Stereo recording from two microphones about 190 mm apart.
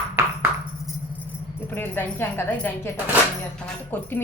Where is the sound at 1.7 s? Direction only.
10° left (ahead or behind).